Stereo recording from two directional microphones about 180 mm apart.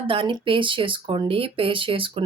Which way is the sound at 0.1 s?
30° right (ahead or behind).